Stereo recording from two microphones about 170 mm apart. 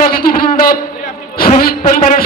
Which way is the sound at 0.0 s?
60° left (ahead or behind).